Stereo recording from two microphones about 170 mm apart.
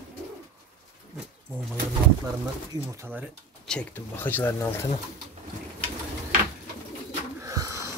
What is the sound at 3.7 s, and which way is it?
Speech, 10° left (ahead or behind).